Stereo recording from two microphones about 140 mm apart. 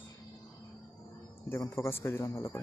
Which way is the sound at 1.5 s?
20° left (ahead or behind).